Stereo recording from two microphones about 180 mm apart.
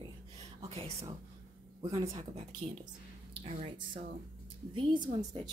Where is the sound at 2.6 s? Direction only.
40° right (ahead or behind).